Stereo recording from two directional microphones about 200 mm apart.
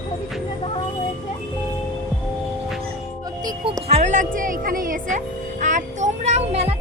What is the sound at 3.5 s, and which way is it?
Speech, 20° right (ahead or behind).